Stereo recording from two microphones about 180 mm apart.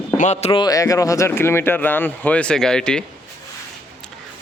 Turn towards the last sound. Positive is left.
turn(degrees=5)  # may be behind; listen again after turning